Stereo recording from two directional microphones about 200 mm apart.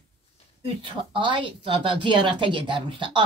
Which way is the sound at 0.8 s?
25° right (ahead or behind).